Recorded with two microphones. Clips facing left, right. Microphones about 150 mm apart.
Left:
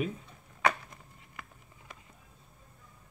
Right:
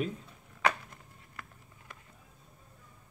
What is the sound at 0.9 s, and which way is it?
Patter, 15° left (ahead or behind).